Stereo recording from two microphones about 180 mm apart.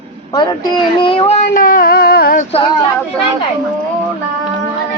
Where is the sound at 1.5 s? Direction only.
50° left (ahead or behind).